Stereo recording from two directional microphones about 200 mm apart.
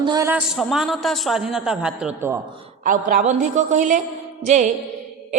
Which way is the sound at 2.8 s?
40° right (ahead or behind).